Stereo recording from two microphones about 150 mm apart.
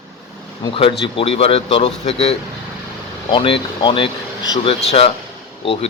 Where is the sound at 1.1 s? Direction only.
40° left (ahead or behind).